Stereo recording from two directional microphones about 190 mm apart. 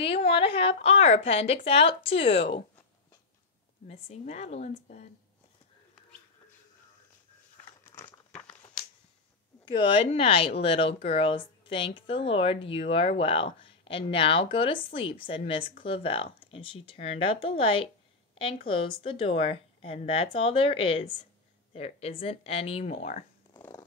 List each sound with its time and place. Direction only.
0.1 s speech: 30° left (ahead or behind)
3.8 s speech: 35° left (ahead or behind)
7.8 s crumpling: 10° left (ahead or behind)
9.7 s speech: 25° left (ahead or behind)
18.3 s a sound: 30° left (ahead or behind)
18.7 s speech: 30° left (ahead or behind)